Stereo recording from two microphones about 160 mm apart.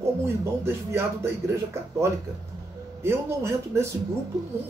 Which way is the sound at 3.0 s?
15° right (ahead or behind).